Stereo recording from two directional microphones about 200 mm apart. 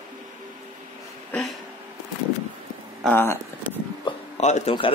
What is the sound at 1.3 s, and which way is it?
Speech, centre (ahead or behind).